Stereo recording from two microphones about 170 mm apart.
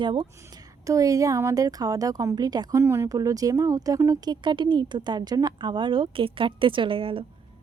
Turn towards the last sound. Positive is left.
turn(degrees=-30)  # may be behind; listen again after turning